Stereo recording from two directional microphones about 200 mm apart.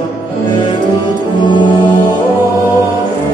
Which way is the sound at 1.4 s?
20° left (ahead or behind).